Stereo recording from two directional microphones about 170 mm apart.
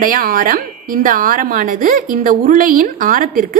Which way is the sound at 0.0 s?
55° right (ahead or behind).